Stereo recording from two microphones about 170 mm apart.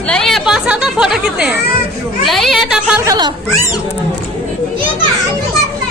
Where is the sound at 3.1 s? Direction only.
25° right (ahead or behind).